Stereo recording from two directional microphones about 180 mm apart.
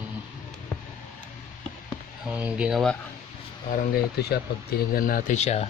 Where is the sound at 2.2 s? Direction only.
5° right (ahead or behind).